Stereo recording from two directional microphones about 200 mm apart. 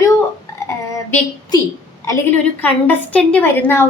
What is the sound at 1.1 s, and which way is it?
Speech, 20° left (ahead or behind).